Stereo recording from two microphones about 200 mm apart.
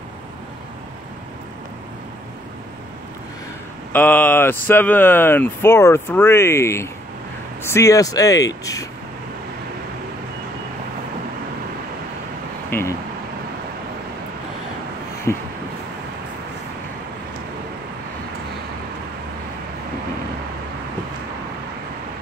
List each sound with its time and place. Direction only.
3.9 s speech: 10° left (ahead or behind)
12.6 s vehicle: 10° left (ahead or behind)
15.3 s a sound: 15° left (ahead or behind)